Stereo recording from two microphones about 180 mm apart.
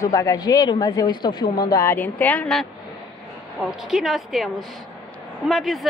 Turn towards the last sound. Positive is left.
turn(degrees=0)  # may be behind; listen again after turning